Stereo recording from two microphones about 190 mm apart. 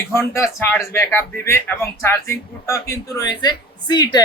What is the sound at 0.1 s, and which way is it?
Speech, 15° left (ahead or behind).